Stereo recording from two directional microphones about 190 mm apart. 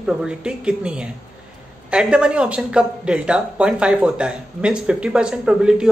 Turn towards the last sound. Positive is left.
turn(degrees=-5)  # may be behind; listen again after turning